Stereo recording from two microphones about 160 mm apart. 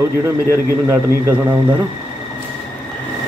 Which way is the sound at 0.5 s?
15° right (ahead or behind).